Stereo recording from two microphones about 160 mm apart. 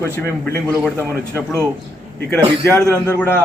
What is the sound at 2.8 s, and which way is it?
Speech, 5° left (ahead or behind).